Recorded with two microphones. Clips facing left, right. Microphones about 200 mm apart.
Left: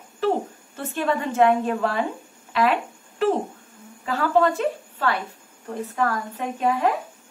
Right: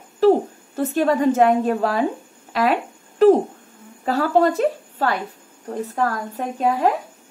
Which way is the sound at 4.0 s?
40° right (ahead or behind).